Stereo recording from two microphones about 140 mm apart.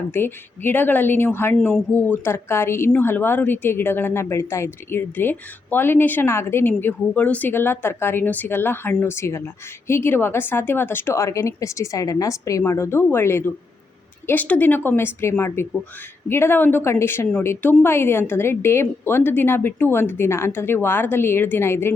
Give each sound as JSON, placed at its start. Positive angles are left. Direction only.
{"t": 0.1, "sound": "a woman's voice", "side_deg": 15}